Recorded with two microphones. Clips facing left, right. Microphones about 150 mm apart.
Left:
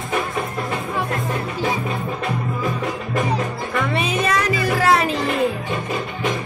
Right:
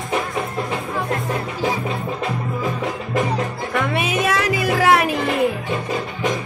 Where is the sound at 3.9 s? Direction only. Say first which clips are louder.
Even; 5° right (ahead or behind).